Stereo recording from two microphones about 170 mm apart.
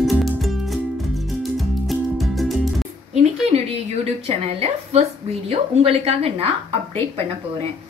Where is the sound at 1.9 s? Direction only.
Centre (ahead or behind).